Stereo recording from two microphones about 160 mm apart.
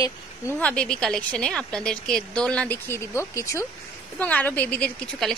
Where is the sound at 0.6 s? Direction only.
5° left (ahead or behind).